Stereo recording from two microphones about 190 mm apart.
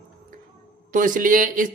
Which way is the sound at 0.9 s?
45° right (ahead or behind).